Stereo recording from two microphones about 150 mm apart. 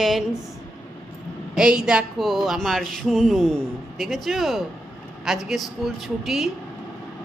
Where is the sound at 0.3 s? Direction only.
20° left (ahead or behind).